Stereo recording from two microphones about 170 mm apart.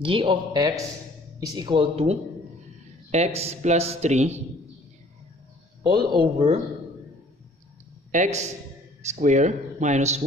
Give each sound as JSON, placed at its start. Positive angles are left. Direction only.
{"t": 0.0, "sound": "speech", "side_deg": -30}
{"t": 5.9, "sound": "speech", "side_deg": -25}
{"t": 8.1, "sound": "speech", "side_deg": -45}